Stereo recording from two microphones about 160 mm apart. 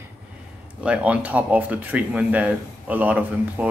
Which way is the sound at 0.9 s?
10° right (ahead or behind).